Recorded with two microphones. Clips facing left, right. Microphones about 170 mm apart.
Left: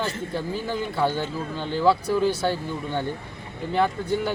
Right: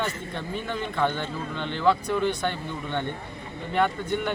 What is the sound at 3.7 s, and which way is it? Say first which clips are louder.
Speech: left 2 dB; 30° left (ahead or behind).